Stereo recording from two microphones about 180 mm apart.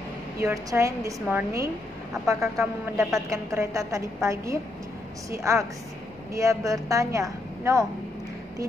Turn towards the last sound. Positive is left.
turn(degrees=-15)  # may be behind; listen again after turning